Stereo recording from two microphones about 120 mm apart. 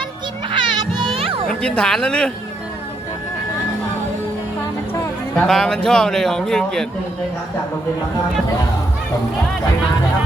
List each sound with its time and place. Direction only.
0.5 s music: 45° right (ahead or behind)
1.5 s a woman's voice: 5° left (ahead or behind)
5.4 s a man's voice: 5° left (ahead or behind)